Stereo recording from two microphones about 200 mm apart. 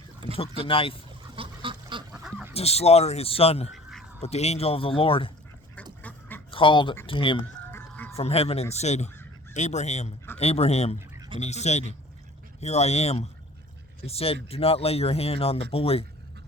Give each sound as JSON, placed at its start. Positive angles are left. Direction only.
{"t": 0.3, "sound": "speech", "side_deg": 30}
{"t": 1.4, "sound": "duck", "side_deg": -25}
{"t": 2.1, "sound": "duck", "side_deg": -5}
{"t": 2.5, "sound": "speech", "side_deg": 30}
{"t": 3.7, "sound": "a sound", "side_deg": 0}
{"t": 4.2, "sound": "speech", "side_deg": 30}
{"t": 6.0, "sound": "duck", "side_deg": 10}
{"t": 6.5, "sound": "speech", "side_deg": 25}
{"t": 7.7, "sound": "a sound", "side_deg": 10}
{"t": 8.1, "sound": "speech", "side_deg": 30}
{"t": 11.1, "sound": "bird", "side_deg": -20}
{"t": 11.3, "sound": "speech", "side_deg": 35}